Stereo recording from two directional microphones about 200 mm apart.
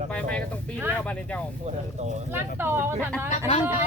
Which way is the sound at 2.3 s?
10° right (ahead or behind).